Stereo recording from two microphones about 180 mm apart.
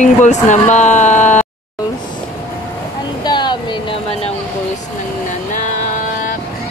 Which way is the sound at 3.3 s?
25° left (ahead or behind).